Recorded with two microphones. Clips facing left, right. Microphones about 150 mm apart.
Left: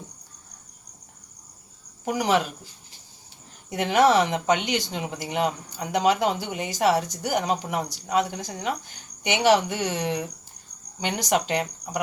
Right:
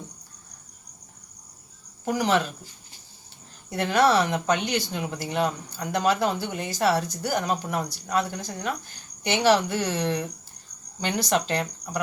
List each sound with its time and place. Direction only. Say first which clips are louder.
2.0 s speech: even; 15° left (ahead or behind)
3.7 s speech: left 2 dB; 15° left (ahead or behind)